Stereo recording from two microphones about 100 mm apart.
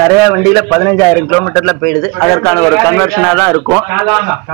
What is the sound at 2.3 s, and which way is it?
A man's voice, 20° left (ahead or behind).